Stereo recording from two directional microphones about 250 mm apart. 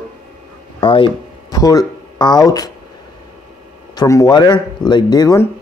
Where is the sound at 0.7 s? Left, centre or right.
Centre.